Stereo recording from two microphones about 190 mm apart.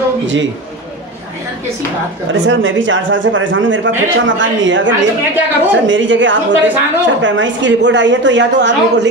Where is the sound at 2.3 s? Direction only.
85° right.